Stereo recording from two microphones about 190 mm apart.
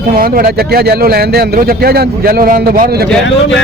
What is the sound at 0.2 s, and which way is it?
Speech, 50° right (ahead or behind).